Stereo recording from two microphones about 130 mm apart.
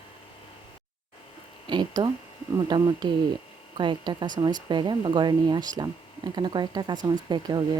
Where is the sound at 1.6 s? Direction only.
35° right (ahead or behind).